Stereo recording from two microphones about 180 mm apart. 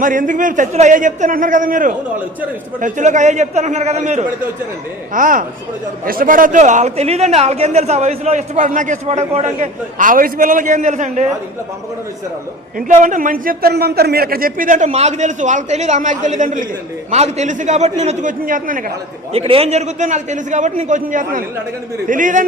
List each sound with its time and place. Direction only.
0.0 s a man's voice: 45° right (ahead or behind)
5.1 s a man's voice: 50° right (ahead or behind)
12.9 s a man's voice: 45° right (ahead or behind)
19.3 s a man's voice: 35° right (ahead or behind)